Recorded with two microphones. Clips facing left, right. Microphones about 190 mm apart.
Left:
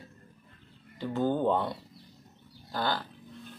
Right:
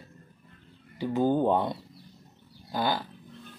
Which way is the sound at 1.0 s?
10° right (ahead or behind).